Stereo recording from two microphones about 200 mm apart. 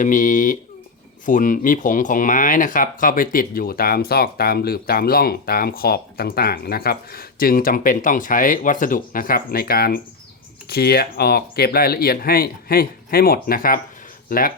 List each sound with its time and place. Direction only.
0.0 s speech: 40° left (ahead or behind)